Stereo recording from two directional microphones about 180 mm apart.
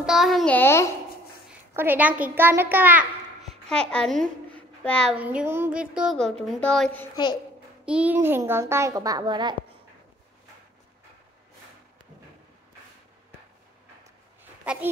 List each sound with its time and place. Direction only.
0.0 s a woman's voice: centre (ahead or behind)
0.6 s a child's voice: 15° left (ahead or behind)
1.8 s a child's voice: 10° right (ahead or behind)
3.6 s a child's voice: 5° left (ahead or behind)
5.1 s a child's voice: 10° right (ahead or behind)
7.8 s a child's voice: 5° right (ahead or behind); by 9.6 s 25° right (ahead or behind)
14.4 s a sound: 10° right (ahead or behind)